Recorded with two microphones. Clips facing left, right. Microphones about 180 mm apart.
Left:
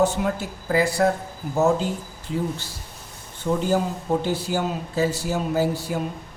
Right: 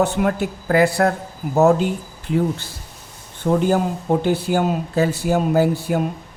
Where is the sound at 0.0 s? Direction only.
60° right (ahead or behind).